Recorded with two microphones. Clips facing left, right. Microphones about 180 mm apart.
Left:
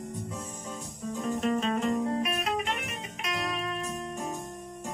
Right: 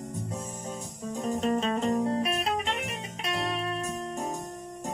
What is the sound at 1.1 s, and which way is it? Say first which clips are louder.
Music: right 1 dB; 30° right (ahead or behind).